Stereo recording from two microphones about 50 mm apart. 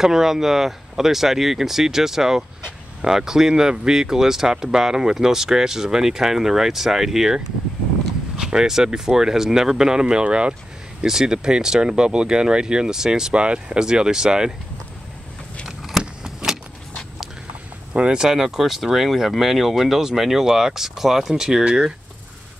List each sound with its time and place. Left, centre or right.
0.0 s speech: centre
16.0 s keys jangling: centre
17.9 s speech: centre